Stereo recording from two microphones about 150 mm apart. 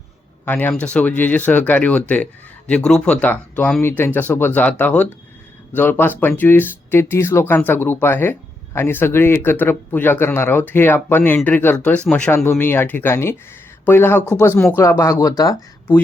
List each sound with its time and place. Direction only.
0.4 s speech: 10° left (ahead or behind)